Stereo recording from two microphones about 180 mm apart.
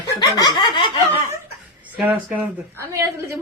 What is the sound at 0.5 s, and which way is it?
Snicker, 30° left (ahead or behind).